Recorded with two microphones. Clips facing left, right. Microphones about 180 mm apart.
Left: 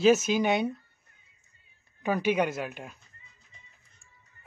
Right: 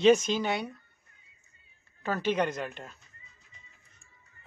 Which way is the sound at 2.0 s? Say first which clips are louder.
Left 2 dB; 15° left (ahead or behind).